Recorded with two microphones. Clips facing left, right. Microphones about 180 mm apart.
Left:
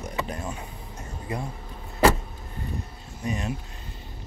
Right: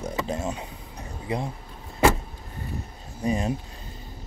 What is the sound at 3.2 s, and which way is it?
Speech, 30° right (ahead or behind).